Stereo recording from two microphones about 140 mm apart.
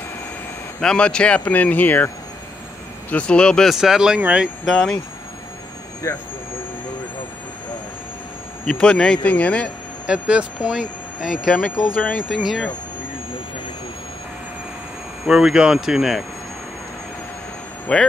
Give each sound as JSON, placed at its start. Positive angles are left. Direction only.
{"t": 0.7, "sound": "speech", "side_deg": 5}
{"t": 3.1, "sound": "speech", "side_deg": 10}
{"t": 4.7, "sound": "speech", "side_deg": 5}
{"t": 6.0, "sound": "speech", "side_deg": 20}
{"t": 8.6, "sound": "speech", "side_deg": 5}
{"t": 10.0, "sound": "speech", "side_deg": -5}
{"t": 12.4, "sound": "speech", "side_deg": 0}
{"t": 15.2, "sound": "speech", "side_deg": -5}
{"t": 17.9, "sound": "speech", "side_deg": 5}